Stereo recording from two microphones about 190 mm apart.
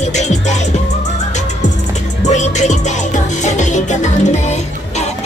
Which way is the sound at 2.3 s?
40° left (ahead or behind).